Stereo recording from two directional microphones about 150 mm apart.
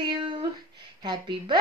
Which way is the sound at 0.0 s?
30° right (ahead or behind).